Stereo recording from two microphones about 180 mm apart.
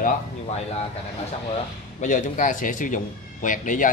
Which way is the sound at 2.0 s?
45° left (ahead or behind).